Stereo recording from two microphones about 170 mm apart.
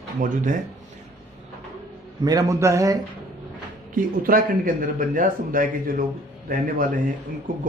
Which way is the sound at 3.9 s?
55° right (ahead or behind).